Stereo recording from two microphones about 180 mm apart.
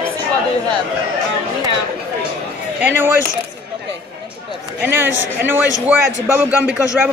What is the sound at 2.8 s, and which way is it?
Speech, 10° right (ahead or behind).